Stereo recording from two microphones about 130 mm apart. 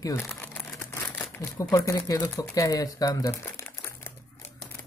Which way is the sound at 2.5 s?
25° left (ahead or behind).